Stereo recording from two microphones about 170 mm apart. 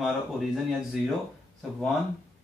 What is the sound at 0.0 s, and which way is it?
Speech, centre (ahead or behind).